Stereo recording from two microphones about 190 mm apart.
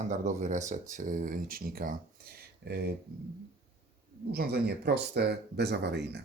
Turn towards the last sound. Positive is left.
turn(degrees=-60)  # may be behind; listen again after turning